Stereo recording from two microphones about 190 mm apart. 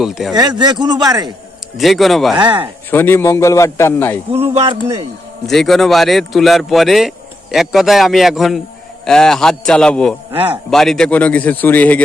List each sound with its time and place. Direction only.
0.0 s a man's voice: centre (ahead or behind)
0.3 s a man's voice: 20° right (ahead or behind)
1.8 s a man's voice: centre (ahead or behind)
2.3 s a man's voice: 25° right (ahead or behind)
2.9 s speech: 10° left (ahead or behind)
5.5 s a man's voice: centre (ahead or behind)
10.3 s a man's voice: 30° right (ahead or behind)
10.7 s speech: centre (ahead or behind)